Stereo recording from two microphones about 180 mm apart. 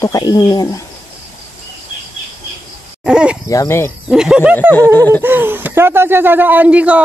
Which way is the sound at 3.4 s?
15° left (ahead or behind).